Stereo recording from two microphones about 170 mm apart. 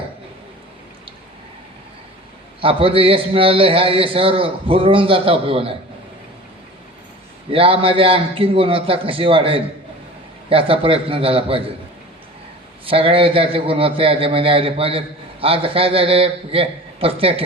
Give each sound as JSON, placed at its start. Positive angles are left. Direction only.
{"t": 2.6, "sound": "a man's voice", "side_deg": -30}
{"t": 7.5, "sound": "a man's voice", "side_deg": -35}
{"t": 12.8, "sound": "a man's voice", "side_deg": -35}